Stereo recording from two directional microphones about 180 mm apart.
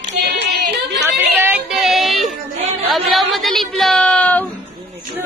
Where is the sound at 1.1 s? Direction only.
10° right (ahead or behind).